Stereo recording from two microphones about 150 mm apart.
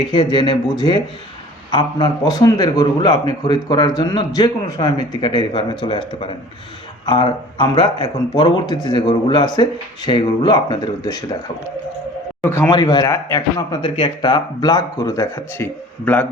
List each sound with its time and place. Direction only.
0.1 s a man's voice: 30° left (ahead or behind)
12.4 s a man's voice: 15° left (ahead or behind)
12.7 s a man's voice: 30° left (ahead or behind); by 16.2 s 15° left (ahead or behind)